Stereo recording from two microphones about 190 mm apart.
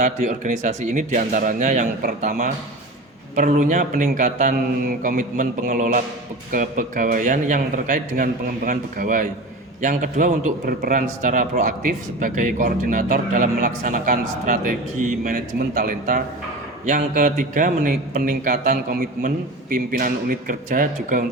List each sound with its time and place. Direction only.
0.0 s a man's voice: 40° right (ahead or behind)